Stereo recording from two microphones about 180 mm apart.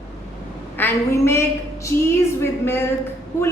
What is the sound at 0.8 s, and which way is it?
A woman's voice, 10° left (ahead or behind).